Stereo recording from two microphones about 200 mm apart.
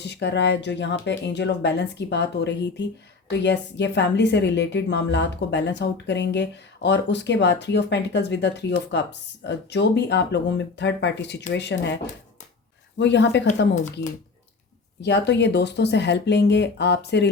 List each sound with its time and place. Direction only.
0.0 s a woman's voice: 55° left (ahead or behind)
13.0 s a woman's voice: 60° left (ahead or behind)
15.0 s a woman's voice: 60° left (ahead or behind)